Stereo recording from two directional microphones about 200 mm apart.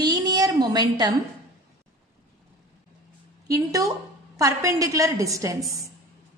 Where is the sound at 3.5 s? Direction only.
15° right (ahead or behind).